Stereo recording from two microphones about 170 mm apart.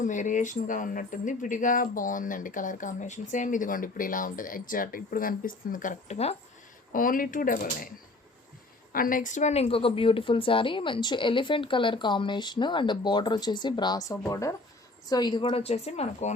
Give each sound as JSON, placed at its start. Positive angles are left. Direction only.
{"t": 0.0, "sound": "speech", "side_deg": 50}
{"t": 6.9, "sound": "a woman's voice", "side_deg": 55}